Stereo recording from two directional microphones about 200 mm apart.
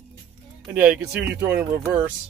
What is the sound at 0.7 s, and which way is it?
Speech, 10° right (ahead or behind).